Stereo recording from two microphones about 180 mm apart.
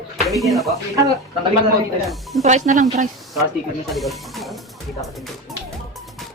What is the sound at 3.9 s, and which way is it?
Music, centre (ahead or behind).